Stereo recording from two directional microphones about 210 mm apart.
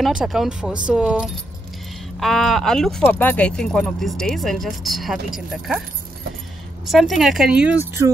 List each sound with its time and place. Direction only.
0.0 s speech: centre (ahead or behind)
6.9 s speech: centre (ahead or behind)